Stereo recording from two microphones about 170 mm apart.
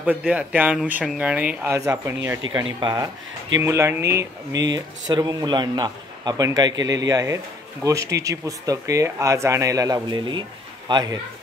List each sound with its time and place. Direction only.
0.0 s speech: 10° right (ahead or behind); by 11.1 s 25° right (ahead or behind)